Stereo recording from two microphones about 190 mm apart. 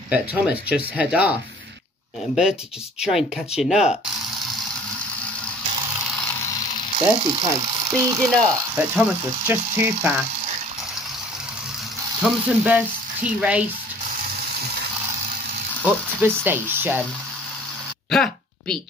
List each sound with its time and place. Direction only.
0.1 s speech: 5° right (ahead or behind)
3.0 s speech: centre (ahead or behind)
7.0 s speech: 30° right (ahead or behind)
8.3 s speech: 5° right (ahead or behind)
12.3 s speech: 5° right (ahead or behind)
15.8 s speech: 10° right (ahead or behind)
18.1 s a sound: 5° left (ahead or behind)